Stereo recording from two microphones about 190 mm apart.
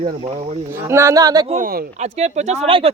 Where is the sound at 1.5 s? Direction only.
45° right (ahead or behind).